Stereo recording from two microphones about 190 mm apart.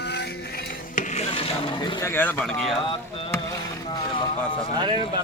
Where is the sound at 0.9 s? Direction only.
40° left (ahead or behind).